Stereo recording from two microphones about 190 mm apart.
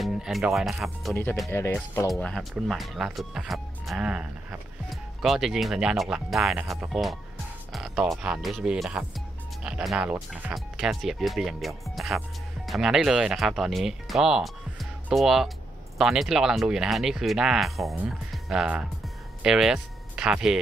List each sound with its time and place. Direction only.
0.0 s speech: centre (ahead or behind)
1.5 s speech: 15° left (ahead or behind); by 20.5 s 5° right (ahead or behind)